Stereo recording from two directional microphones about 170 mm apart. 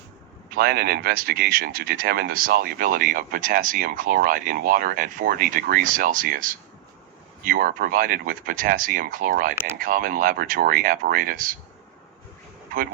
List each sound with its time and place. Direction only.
0.5 s speech: 65° right (ahead or behind)